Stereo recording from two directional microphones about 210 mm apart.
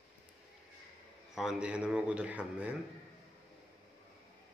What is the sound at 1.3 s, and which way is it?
A man's voice, 5° right (ahead or behind).